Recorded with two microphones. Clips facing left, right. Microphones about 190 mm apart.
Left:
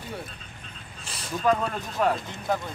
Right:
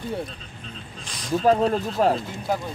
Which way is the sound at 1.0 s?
5° left (ahead or behind).